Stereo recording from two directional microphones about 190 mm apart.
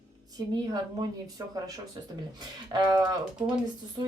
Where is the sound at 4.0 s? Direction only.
20° right (ahead or behind).